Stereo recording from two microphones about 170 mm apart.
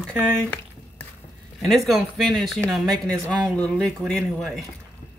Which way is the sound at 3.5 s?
5° left (ahead or behind).